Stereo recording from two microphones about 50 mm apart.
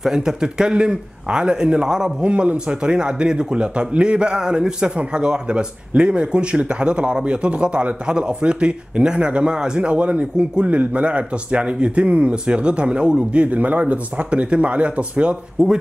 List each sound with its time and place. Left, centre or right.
0.0 s a man's voice: centre
15.6 s speech: centre